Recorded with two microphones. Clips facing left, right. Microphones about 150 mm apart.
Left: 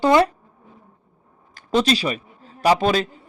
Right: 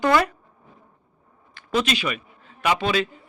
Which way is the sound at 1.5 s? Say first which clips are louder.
Left 5 dB; 35° left (ahead or behind).